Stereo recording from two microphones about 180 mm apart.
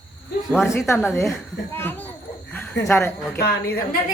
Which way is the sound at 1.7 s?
10° left (ahead or behind).